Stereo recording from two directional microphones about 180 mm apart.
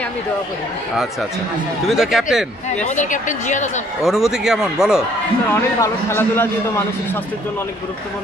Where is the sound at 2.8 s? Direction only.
45° left (ahead or behind).